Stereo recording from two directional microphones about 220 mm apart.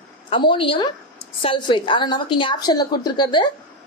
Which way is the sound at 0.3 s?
25° left (ahead or behind).